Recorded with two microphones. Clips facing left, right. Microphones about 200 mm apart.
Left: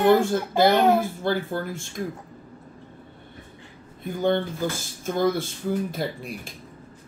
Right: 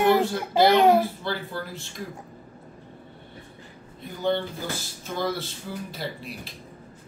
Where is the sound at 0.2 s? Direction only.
50° left (ahead or behind).